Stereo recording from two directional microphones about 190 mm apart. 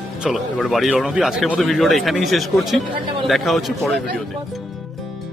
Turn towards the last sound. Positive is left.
turn(degrees=0)  # may be behind; listen again after turning